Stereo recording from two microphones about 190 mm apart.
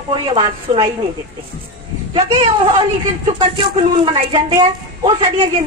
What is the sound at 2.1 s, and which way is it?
A woman's voice, 30° right (ahead or behind).